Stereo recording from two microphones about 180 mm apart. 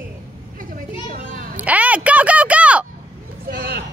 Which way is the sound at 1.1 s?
55° right (ahead or behind).